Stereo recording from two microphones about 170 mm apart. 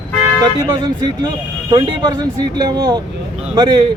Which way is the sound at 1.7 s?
25° right (ahead or behind).